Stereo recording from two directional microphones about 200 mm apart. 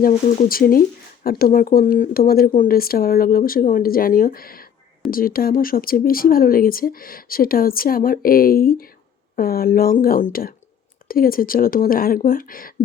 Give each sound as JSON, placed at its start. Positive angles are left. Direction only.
{"t": 0.0, "sound": "speech", "side_deg": 40}